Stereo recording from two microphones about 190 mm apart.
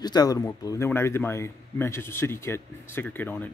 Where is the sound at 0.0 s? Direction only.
20° left (ahead or behind).